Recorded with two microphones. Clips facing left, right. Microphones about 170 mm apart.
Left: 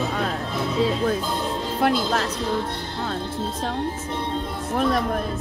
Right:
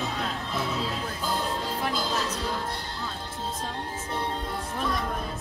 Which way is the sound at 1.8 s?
70° left (ahead or behind).